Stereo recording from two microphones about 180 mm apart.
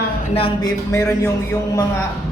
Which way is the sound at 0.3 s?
30° left (ahead or behind).